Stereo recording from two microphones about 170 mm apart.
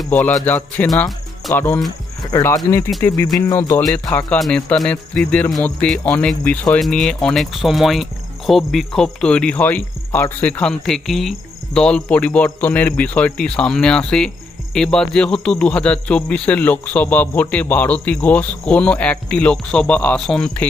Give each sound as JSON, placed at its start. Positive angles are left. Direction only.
{"t": 0.0, "sound": "speech", "side_deg": 10}